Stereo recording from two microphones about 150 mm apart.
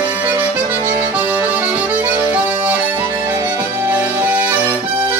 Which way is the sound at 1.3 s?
10° right (ahead or behind).